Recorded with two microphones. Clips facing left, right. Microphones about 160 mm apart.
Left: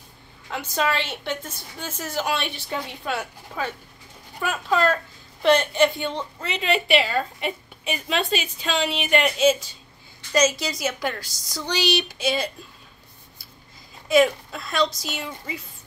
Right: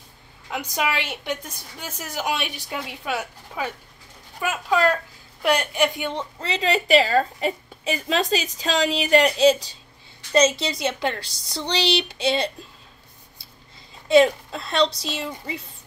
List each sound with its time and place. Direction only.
0.5 s a woman's voice: 15° right (ahead or behind)
6.4 s a woman's voice: 35° right (ahead or behind)
14.0 s a woman's voice: 30° right (ahead or behind)